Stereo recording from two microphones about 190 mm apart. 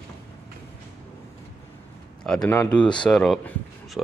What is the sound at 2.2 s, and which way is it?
Speech, 5° left (ahead or behind).